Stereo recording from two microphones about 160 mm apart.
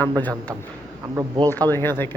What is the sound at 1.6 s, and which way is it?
Speech, 15° left (ahead or behind).